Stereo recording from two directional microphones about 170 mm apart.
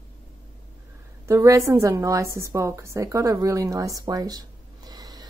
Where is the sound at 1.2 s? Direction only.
20° right (ahead or behind).